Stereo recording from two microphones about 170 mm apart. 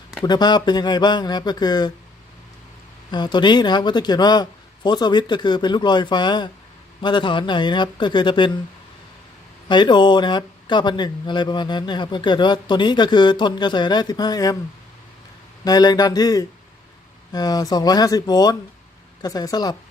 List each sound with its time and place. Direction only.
0.2 s speech: 25° left (ahead or behind)
3.1 s speech: 25° left (ahead or behind)
9.6 s speech: 25° left (ahead or behind)
15.6 s speech: 25° left (ahead or behind)